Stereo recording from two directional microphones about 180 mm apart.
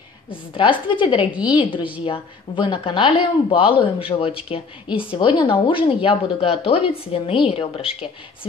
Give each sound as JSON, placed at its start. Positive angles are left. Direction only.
{"t": 0.3, "sound": "a woman's voice", "side_deg": 30}
{"t": 1.8, "sound": "speech", "side_deg": -10}
{"t": 2.0, "sound": "a woman's voice", "side_deg": 30}